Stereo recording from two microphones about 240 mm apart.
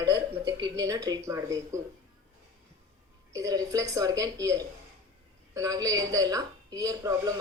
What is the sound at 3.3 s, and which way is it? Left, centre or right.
A woman's voice, centre.